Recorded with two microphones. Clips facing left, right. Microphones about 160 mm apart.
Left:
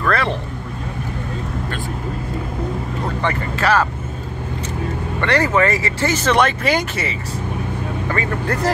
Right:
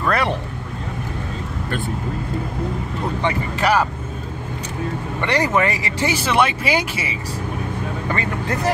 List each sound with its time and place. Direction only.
0.0 s vehicle: 15° right (ahead or behind)
3.2 s speech: 15° right (ahead or behind)
5.2 s speech: 15° right (ahead or behind)
8.1 s speech: 20° right (ahead or behind)